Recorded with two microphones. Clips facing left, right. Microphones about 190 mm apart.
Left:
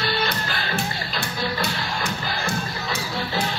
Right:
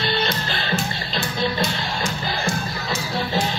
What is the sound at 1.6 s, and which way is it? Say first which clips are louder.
Music: right 2 dB; 60° left (ahead or behind).